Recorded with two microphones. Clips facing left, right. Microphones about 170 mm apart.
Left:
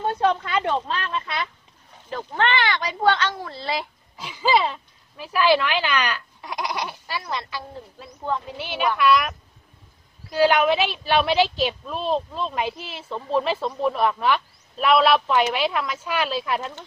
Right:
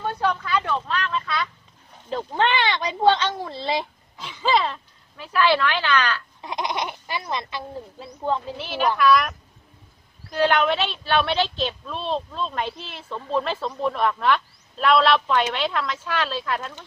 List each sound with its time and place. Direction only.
0.0 s speech: 25° left (ahead or behind)
2.0 s speech: 20° right (ahead or behind)
4.2 s speech: 5° left (ahead or behind)
6.4 s speech: 20° right (ahead or behind)
8.5 s a woman's voice: centre (ahead or behind)
10.3 s a woman's voice: 10° left (ahead or behind)